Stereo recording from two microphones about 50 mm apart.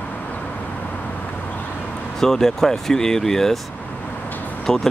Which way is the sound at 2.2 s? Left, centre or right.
Centre.